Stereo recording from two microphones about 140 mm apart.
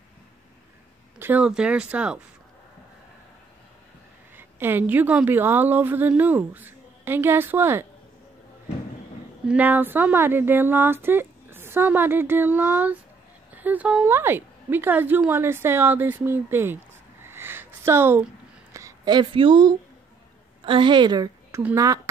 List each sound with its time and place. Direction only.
1.2 s a woman's voice: 10° right (ahead or behind)
4.4 s a woman's voice: 15° right (ahead or behind)
9.5 s a woman's voice: 10° right (ahead or behind); by 21.3 s 30° right (ahead or behind)
21.5 s speech: 20° right (ahead or behind)